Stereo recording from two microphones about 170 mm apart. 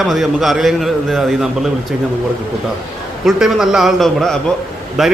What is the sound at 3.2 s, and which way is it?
A man's voice, centre (ahead or behind).